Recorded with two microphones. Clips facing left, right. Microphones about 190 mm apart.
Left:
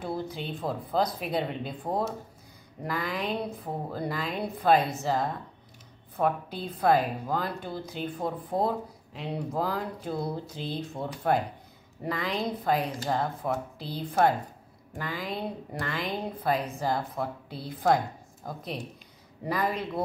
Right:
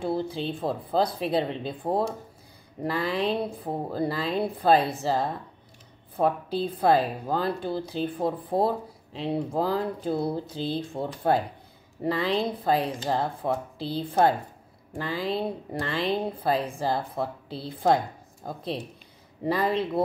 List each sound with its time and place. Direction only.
0.0 s a woman's voice: 30° right (ahead or behind)